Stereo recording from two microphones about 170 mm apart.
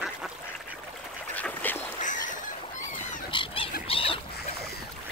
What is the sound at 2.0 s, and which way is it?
Fowl, 50° left (ahead or behind).